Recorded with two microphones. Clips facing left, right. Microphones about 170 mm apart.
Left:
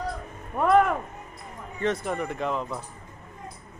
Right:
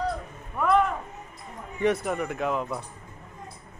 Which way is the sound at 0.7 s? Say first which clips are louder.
Left 3 dB; 50° left (ahead or behind).